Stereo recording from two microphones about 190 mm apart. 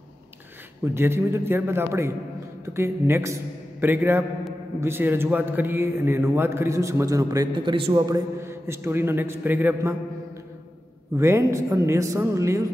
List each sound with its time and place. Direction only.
0.9 s a man's voice: 15° right (ahead or behind)
11.1 s a man's voice: 15° right (ahead or behind)